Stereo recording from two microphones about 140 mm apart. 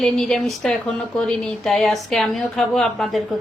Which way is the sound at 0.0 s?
5° left (ahead or behind).